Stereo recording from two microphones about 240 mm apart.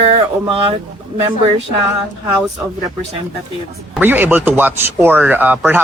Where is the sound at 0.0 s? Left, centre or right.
Right.